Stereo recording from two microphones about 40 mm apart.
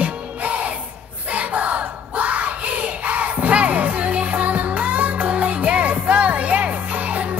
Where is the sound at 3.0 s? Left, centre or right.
Right.